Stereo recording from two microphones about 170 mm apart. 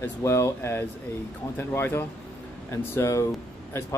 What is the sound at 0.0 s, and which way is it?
Speech, 15° left (ahead or behind).